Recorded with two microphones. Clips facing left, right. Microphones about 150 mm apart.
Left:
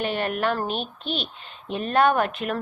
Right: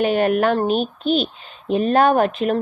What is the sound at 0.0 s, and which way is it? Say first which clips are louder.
A woman's voice: right 8 dB; 50° right (ahead or behind).